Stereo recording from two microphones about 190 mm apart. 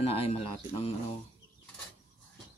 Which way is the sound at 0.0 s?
30° left (ahead or behind).